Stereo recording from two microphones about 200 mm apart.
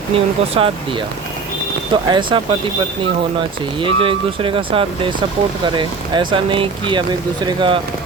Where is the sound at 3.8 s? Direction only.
25° right (ahead or behind).